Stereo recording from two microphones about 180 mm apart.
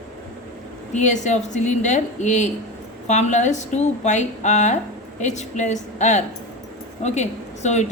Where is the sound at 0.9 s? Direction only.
40° left (ahead or behind).